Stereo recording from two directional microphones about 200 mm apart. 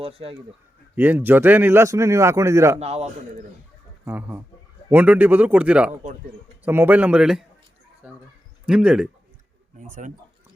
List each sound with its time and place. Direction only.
0.0 s speech: 30° right (ahead or behind)
0.9 s speech: 10° right (ahead or behind)
2.7 s a man's voice: 30° right (ahead or behind)
4.0 s speech: 10° right (ahead or behind)
8.0 s a sound: 5° right (ahead or behind)
8.6 s speech: 5° right (ahead or behind)
9.7 s speech: 40° right (ahead or behind)